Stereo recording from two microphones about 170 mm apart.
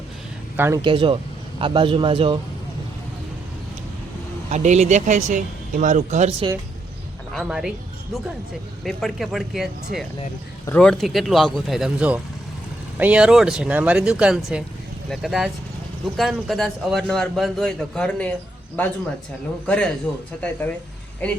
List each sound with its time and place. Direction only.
0.5 s speech: 15° right (ahead or behind)
0.8 s speech: 30° right (ahead or behind)
4.4 s speech: 40° right (ahead or behind)
7.3 s a man's voice: 5° right (ahead or behind)
8.8 s a man's voice: centre (ahead or behind)
19.6 s speech: 5° left (ahead or behind)